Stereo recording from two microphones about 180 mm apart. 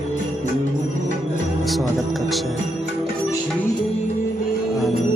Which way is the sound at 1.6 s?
Centre (ahead or behind).